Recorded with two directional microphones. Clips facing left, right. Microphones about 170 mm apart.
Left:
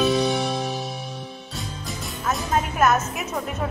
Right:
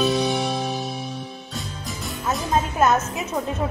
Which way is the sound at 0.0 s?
Centre (ahead or behind).